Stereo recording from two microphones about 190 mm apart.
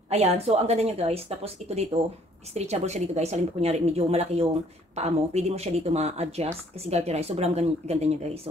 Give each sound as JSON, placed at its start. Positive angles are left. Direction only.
{"t": 0.1, "sound": "speech", "side_deg": -35}